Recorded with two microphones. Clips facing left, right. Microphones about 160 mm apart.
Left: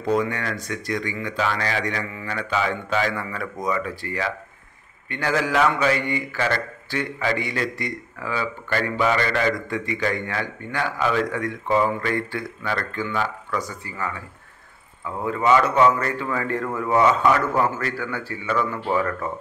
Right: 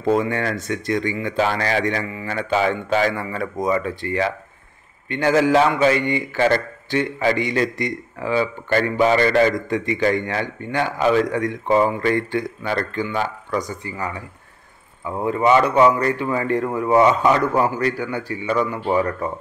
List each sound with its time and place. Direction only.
0.0 s a man's voice: 25° right (ahead or behind)
15.2 s a man's voice: 25° right (ahead or behind)